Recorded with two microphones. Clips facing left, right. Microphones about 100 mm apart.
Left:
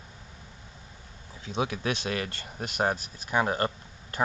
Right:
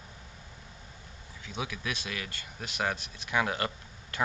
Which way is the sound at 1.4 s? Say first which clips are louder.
Left 7 dB; 35° left (ahead or behind).